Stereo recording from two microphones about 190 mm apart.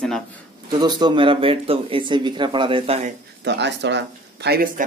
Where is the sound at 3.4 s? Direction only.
65° right (ahead or behind).